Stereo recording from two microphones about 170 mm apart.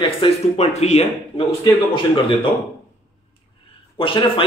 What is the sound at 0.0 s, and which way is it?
A man's voice, 35° left (ahead or behind).